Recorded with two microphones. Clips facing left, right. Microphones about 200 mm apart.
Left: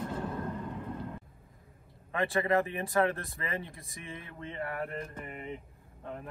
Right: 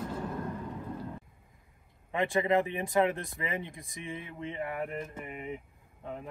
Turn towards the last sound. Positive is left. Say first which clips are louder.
# right 1 dB
turn(degrees=-10)  # may be behind; listen again after turning